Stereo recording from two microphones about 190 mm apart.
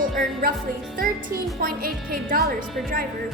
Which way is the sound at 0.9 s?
50° right (ahead or behind).